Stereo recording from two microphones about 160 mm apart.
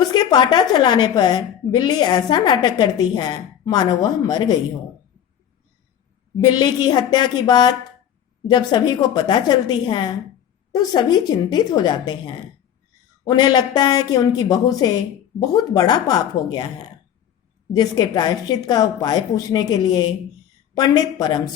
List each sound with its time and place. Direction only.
0.0 s a woman's voice: 25° left (ahead or behind)
6.4 s a woman's voice: 25° left (ahead or behind)